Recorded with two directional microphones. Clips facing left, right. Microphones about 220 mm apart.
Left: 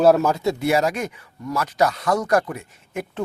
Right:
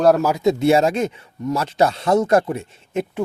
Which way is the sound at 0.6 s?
25° right (ahead or behind).